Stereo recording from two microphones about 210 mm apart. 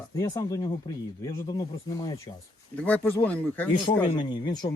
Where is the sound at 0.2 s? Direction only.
15° left (ahead or behind).